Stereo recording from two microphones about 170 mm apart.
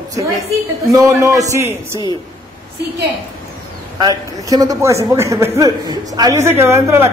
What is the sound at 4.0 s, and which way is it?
A man's voice, 20° right (ahead or behind).